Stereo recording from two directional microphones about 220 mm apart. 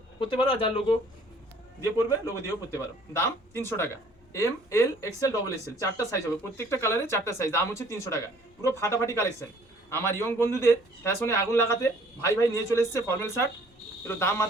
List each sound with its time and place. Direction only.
0.2 s a man's voice: 25° left (ahead or behind)